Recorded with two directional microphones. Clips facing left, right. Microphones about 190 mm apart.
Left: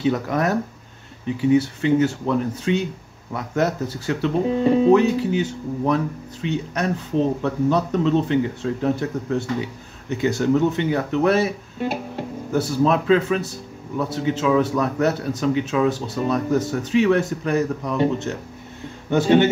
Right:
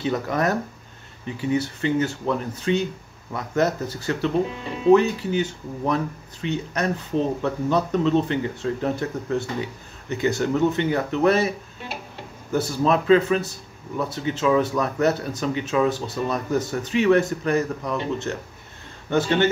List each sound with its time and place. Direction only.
0.0 s speech: 5° left (ahead or behind)
4.5 s speech: 40° left (ahead or behind)
4.9 s speech: 5° left (ahead or behind)
11.8 s music: 45° left (ahead or behind)
12.5 s speech: centre (ahead or behind)
19.0 s speech: 15° left (ahead or behind)